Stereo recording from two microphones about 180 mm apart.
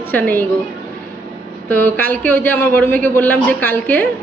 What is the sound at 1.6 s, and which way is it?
A woman's voice, 10° left (ahead or behind).